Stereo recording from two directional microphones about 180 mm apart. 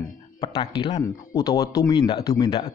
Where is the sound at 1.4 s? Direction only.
15° left (ahead or behind).